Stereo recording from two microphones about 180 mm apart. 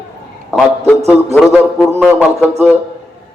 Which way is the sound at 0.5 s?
5° left (ahead or behind).